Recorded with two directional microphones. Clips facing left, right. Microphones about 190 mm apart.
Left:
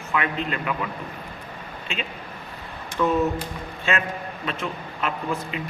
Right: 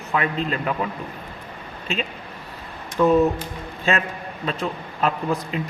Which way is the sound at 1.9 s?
35° right (ahead or behind).